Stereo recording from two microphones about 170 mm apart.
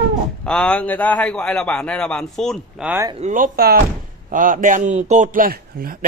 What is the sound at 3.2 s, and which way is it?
A man's voice, 45° right (ahead or behind).